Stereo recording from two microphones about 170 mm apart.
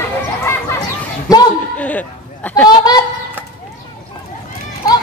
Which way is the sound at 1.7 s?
10° left (ahead or behind).